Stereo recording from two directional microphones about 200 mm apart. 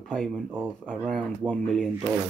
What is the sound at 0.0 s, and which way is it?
Speech, 5° left (ahead or behind).